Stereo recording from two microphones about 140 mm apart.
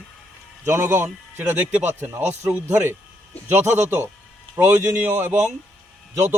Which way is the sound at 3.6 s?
55° right (ahead or behind).